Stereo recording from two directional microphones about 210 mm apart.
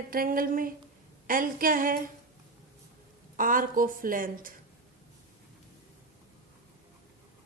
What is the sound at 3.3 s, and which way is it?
A woman's voice, 40° right (ahead or behind).